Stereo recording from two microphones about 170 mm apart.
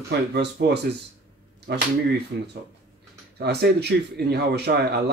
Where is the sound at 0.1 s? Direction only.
75° right (ahead or behind).